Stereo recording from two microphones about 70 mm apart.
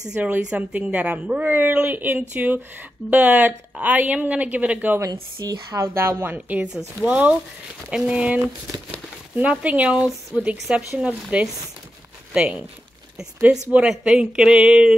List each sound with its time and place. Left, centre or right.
0.1 s a woman's voice: centre
5.4 s a woman's voice: right
5.8 s a woman's voice: right
6.3 s a woman's voice: right
9.4 s a woman's voice: centre
10.7 s speech: centre
13.8 s speech: centre